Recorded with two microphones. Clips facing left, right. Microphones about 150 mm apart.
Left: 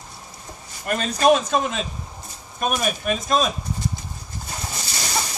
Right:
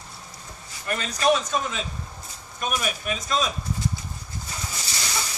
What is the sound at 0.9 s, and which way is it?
A man's voice, 50° left (ahead or behind).